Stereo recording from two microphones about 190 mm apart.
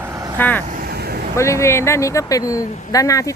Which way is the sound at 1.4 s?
15° left (ahead or behind).